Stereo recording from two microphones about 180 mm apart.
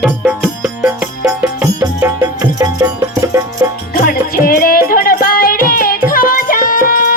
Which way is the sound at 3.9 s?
50° left (ahead or behind).